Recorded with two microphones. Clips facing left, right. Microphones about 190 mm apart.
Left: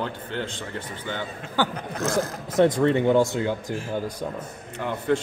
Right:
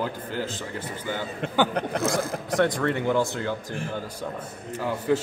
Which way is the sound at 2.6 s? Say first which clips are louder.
Left 5 dB; 20° left (ahead or behind).